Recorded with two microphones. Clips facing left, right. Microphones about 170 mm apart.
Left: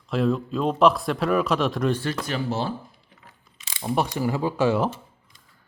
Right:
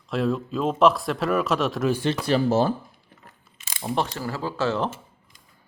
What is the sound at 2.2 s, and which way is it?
Speech, 40° right (ahead or behind).